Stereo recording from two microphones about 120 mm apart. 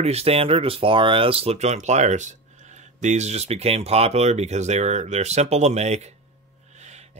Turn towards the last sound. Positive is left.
turn(degrees=-70)  # may be behind; listen again after turning